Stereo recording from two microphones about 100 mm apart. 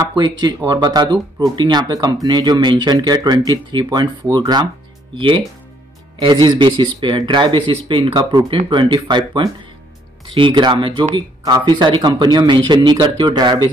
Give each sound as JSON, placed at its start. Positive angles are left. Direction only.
{"t": 0.1, "sound": "speech", "side_deg": -50}
{"t": 5.1, "sound": "speech", "side_deg": -55}
{"t": 11.4, "sound": "speech", "side_deg": -40}